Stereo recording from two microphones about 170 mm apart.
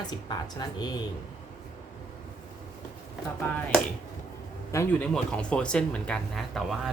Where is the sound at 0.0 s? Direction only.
25° left (ahead or behind).